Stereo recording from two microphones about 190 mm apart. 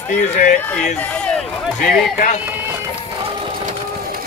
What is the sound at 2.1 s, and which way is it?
Speech, 40° left (ahead or behind).